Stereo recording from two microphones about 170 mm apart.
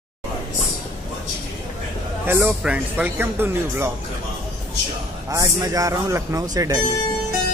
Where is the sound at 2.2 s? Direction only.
10° right (ahead or behind).